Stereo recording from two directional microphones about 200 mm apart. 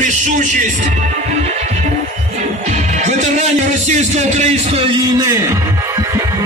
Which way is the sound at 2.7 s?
35° right (ahead or behind).